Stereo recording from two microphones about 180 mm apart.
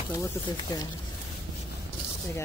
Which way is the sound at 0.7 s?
20° left (ahead or behind).